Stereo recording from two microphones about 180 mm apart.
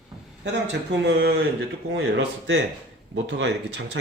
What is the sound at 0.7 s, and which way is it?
Speech, 70° right (ahead or behind).